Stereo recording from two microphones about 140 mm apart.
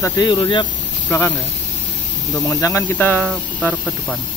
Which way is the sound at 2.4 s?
20° left (ahead or behind).